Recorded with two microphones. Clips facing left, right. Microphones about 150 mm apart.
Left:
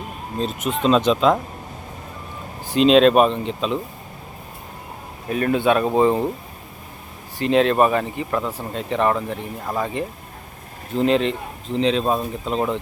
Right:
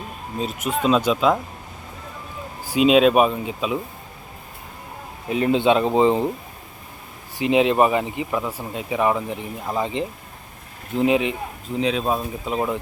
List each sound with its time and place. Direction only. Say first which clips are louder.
0.3 s speech: left 1 dB; 5° right (ahead or behind)
2.7 s speech: left 2 dB; 5° right (ahead or behind)
5.3 s speech: right 1 dB; 20° right (ahead or behind)
7.3 s speech: left 1 dB; 15° right (ahead or behind)